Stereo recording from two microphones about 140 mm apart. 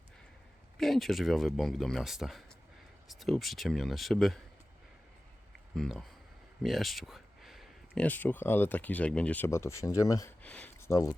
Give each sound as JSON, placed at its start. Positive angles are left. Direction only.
{"t": 0.8, "sound": "speech", "side_deg": 0}
{"t": 5.7, "sound": "speech", "side_deg": 5}
{"t": 6.6, "sound": "a sound", "side_deg": 0}
{"t": 8.0, "sound": "speech", "side_deg": 10}
{"t": 10.4, "sound": "speech", "side_deg": 10}